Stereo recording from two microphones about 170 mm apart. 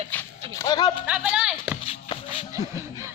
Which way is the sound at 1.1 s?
5° right (ahead or behind).